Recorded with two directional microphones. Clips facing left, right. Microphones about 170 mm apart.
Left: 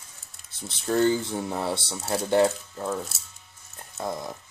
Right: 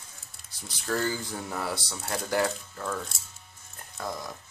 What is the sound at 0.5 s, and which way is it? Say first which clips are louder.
Speech: left 4 dB; 25° left (ahead or behind).